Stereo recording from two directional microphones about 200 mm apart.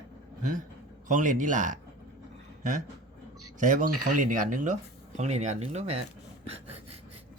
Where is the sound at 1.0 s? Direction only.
40° right (ahead or behind).